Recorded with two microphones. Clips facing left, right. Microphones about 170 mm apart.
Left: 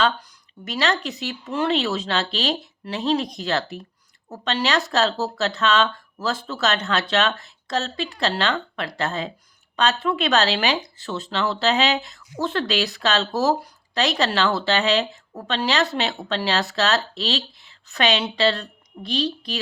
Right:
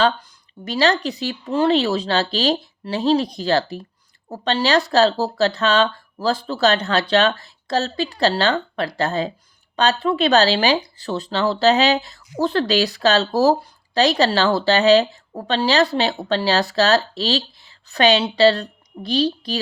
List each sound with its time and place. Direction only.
0.6 s speech: 35° right (ahead or behind)